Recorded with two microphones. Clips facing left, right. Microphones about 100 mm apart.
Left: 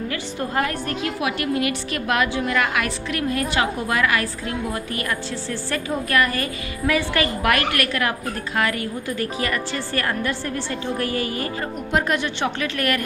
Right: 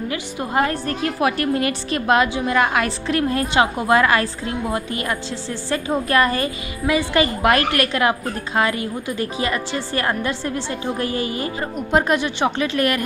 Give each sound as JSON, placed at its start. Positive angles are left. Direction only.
{"t": 0.1, "sound": "a woman's voice", "side_deg": -20}
{"t": 0.7, "sound": "a woman's voice", "side_deg": -35}
{"t": 5.7, "sound": "a woman's voice", "side_deg": -25}